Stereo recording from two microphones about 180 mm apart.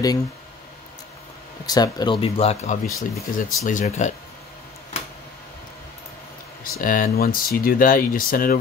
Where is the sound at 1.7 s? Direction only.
20° left (ahead or behind); by 4.1 s 40° left (ahead or behind).